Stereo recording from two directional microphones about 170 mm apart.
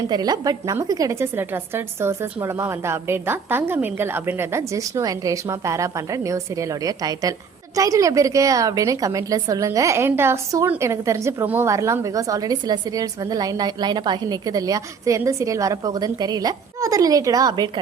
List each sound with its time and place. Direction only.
0.1 s a woman's voice: 25° right (ahead or behind)